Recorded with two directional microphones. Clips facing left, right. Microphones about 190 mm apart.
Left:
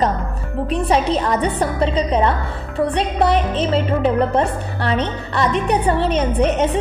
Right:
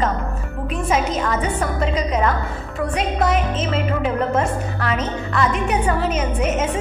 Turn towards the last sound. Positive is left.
turn(degrees=35)  # may be behind; listen again after turning